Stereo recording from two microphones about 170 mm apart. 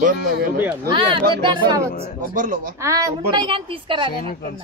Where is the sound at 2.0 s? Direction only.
50° right (ahead or behind).